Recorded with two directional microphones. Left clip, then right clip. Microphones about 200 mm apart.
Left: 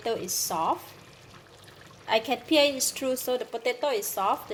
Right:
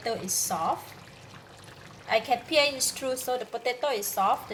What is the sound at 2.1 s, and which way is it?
A woman's voice, 40° left (ahead or behind).